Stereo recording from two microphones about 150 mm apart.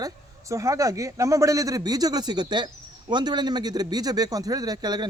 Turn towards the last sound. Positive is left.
turn(degrees=-25)  # may be behind; listen again after turning